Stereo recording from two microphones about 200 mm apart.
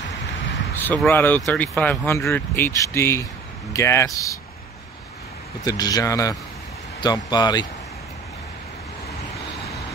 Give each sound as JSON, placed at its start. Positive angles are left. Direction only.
{"t": 0.7, "sound": "speech", "side_deg": 10}
{"t": 5.6, "sound": "speech", "side_deg": 20}